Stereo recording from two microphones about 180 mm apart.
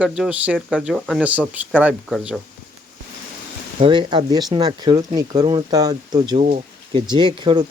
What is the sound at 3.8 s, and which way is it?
Speech, 25° right (ahead or behind).